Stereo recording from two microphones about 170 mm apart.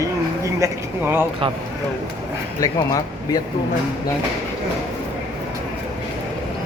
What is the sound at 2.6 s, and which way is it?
Speech, 20° left (ahead or behind).